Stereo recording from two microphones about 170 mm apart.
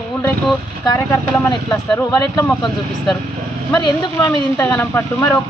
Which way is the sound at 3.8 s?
20° left (ahead or behind).